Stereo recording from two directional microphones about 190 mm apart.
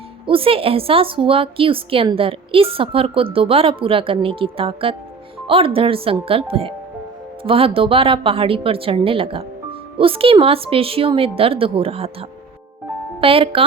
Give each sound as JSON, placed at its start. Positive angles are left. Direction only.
{"t": 0.3, "sound": "a woman's voice", "side_deg": -30}
{"t": 13.2, "sound": "a woman's voice", "side_deg": -30}